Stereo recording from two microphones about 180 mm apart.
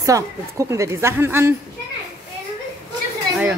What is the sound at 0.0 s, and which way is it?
A woman's voice, 15° right (ahead or behind).